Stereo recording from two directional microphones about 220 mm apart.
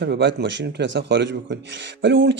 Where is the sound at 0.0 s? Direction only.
55° right (ahead or behind).